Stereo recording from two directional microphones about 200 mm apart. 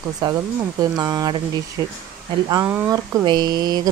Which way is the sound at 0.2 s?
20° right (ahead or behind).